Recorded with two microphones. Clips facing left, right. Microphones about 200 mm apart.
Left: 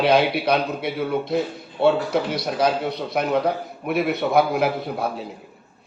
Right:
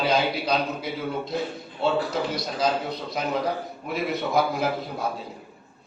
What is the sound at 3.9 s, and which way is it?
Speech, 65° left (ahead or behind).